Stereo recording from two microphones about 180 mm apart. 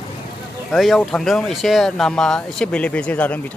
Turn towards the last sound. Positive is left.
turn(degrees=10)  # may be behind; listen again after turning